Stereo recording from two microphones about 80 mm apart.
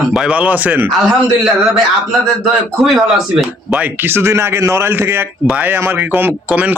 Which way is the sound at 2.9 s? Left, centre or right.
Centre.